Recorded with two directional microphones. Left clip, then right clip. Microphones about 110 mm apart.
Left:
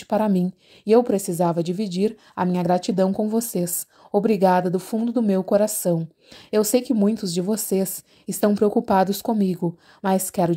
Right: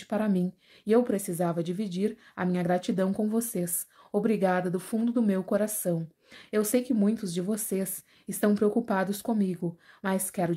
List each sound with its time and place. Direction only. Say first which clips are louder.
0.0 s a woman's voice: left 8 dB; 55° left (ahead or behind); by 5.4 s 40° left (ahead or behind)
5.5 s a woman's voice: left 9 dB; 50° left (ahead or behind)